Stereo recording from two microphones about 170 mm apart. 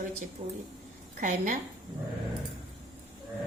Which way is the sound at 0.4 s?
45° right (ahead or behind).